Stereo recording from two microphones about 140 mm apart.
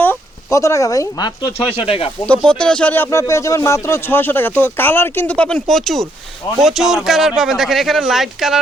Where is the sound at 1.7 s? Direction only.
45° left (ahead or behind).